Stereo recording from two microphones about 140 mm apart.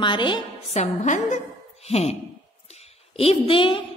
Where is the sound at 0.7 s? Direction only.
60° left (ahead or behind).